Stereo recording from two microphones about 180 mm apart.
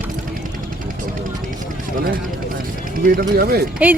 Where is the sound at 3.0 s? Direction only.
55° right (ahead or behind).